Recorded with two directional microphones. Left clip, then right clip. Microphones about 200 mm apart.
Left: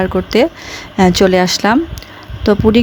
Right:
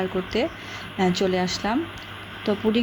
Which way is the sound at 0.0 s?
55° left (ahead or behind).